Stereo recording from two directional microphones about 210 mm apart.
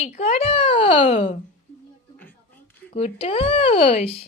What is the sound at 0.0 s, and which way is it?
A child's voice, 30° left (ahead or behind).